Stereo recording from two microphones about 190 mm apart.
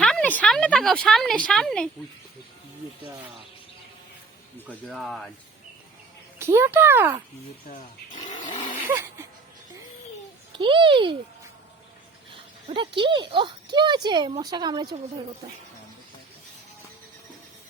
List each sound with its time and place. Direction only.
0.0 s speech: 5° left (ahead or behind)
4.7 s speech: 5° left (ahead or behind)
6.4 s a child's voice: 15° right (ahead or behind)
8.9 s a sound: 10° right (ahead or behind)
10.5 s speech: 25° right (ahead or behind)
12.3 s a sound: 25° right (ahead or behind)
13.3 s speech: 25° right (ahead or behind)